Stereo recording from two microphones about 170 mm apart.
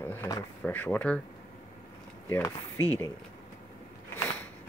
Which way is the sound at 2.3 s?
10° left (ahead or behind).